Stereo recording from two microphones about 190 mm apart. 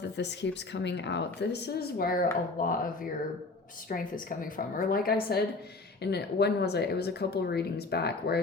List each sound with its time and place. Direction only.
0.0 s speech: 65° left (ahead or behind); by 2.7 s 50° left (ahead or behind)
3.8 s a woman's voice: 45° left (ahead or behind)